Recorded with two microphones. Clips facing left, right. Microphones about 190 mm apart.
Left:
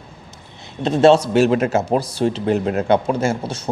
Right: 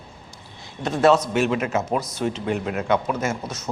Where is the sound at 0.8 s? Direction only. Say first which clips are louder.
Left 5 dB; 25° left (ahead or behind).